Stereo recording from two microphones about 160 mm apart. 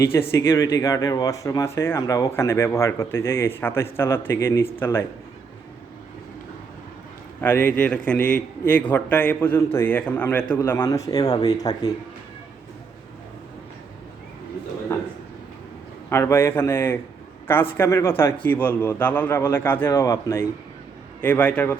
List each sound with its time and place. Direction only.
0.0 s speech: 15° left (ahead or behind)
7.4 s a man's voice: 15° left (ahead or behind)
14.9 s a sound: 15° left (ahead or behind)
16.0 s speech: 15° left (ahead or behind)